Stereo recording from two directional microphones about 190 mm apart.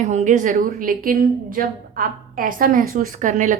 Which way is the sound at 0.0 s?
40° right (ahead or behind).